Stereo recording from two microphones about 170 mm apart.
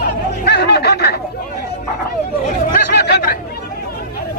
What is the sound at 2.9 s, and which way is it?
Chatter, 70° left (ahead or behind).